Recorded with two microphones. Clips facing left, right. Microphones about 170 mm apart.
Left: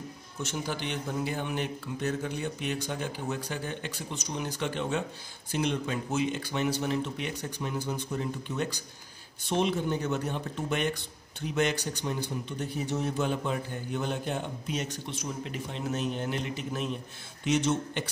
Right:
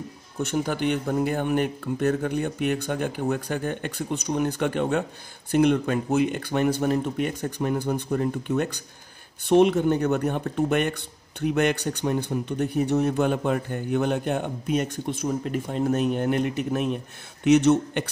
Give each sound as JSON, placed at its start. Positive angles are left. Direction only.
{"t": 0.4, "sound": "speech", "side_deg": -55}